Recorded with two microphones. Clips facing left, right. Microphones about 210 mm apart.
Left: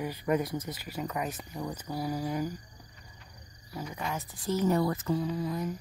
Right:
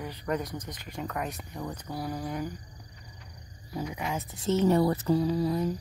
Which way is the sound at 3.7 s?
15° right (ahead or behind).